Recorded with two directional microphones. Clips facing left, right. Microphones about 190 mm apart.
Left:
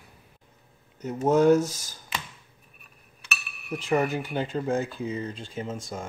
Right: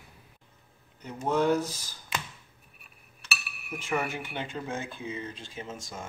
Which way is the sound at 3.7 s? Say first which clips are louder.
Left 6 dB; 35° left (ahead or behind).